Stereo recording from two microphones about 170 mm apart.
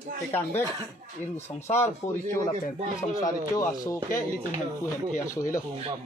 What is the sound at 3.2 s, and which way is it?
Speech, 20° left (ahead or behind).